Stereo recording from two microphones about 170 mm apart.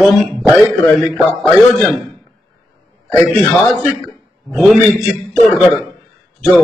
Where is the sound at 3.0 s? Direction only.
5° left (ahead or behind).